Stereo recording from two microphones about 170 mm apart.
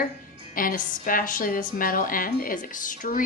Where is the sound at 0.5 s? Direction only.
55° left (ahead or behind).